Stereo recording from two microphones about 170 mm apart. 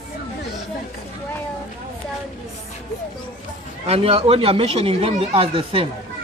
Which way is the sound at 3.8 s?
35° right (ahead or behind).